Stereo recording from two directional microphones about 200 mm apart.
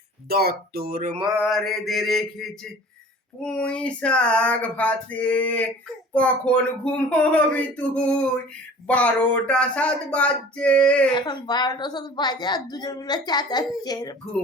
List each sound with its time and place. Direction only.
0.3 s speech: 50° right (ahead or behind)
1.4 s speech: centre (ahead or behind)
3.4 s a sound: 5° left (ahead or behind)
6.1 s speech: 5° left (ahead or behind)
11.1 s a woman's voice: 20° left (ahead or behind)